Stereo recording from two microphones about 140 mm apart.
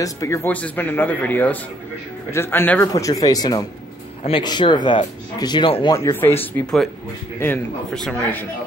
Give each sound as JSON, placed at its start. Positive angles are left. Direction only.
{"t": 0.0, "sound": "speech", "side_deg": 20}
{"t": 2.9, "sound": "speech", "side_deg": 25}
{"t": 5.9, "sound": "speech", "side_deg": 20}